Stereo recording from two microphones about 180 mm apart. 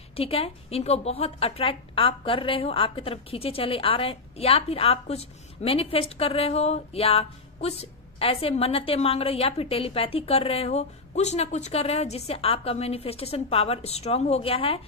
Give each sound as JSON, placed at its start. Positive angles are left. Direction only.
{"t": 0.1, "sound": "a woman's voice", "side_deg": 30}